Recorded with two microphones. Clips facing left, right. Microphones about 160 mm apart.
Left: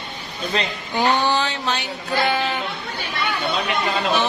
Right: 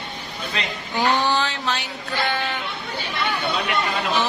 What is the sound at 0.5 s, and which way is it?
Speech, 35° left (ahead or behind).